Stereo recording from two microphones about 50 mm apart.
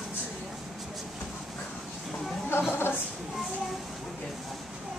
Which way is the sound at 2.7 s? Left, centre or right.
Left.